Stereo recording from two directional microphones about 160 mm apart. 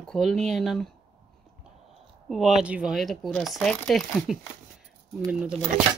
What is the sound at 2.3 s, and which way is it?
Speech, centre (ahead or behind).